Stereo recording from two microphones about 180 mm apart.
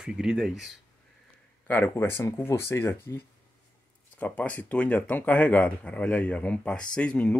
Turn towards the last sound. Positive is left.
turn(degrees=5)  # may be behind; listen again after turning